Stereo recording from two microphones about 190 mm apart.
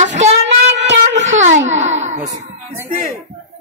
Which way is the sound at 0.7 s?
70° right (ahead or behind).